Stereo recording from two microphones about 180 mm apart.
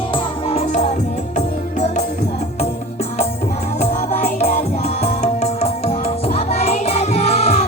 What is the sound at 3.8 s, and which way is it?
Music, 40° left (ahead or behind).